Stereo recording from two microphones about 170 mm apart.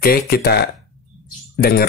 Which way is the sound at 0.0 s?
65° left (ahead or behind).